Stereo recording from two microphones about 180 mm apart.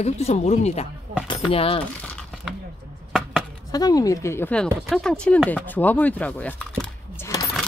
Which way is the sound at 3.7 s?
20° left (ahead or behind).